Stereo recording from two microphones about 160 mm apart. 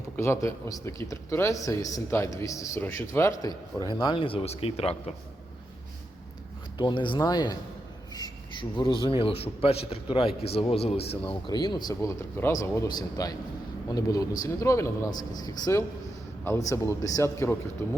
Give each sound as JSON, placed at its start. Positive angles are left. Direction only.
{"t": 0.2, "sound": "a man's voice", "side_deg": 20}
{"t": 6.7, "sound": "a man's voice", "side_deg": 30}
{"t": 8.7, "sound": "a man's voice", "side_deg": 30}